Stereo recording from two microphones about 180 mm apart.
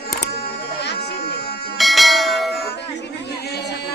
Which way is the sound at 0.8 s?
70° left (ahead or behind).